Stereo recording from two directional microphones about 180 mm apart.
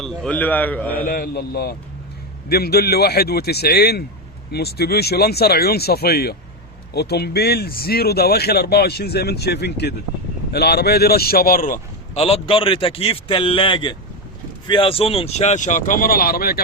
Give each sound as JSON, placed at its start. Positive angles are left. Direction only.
{"t": 0.0, "sound": "a man's voice", "side_deg": 5}
{"t": 0.9, "sound": "speech", "side_deg": 55}
{"t": 12.2, "sound": "a man's voice", "side_deg": 30}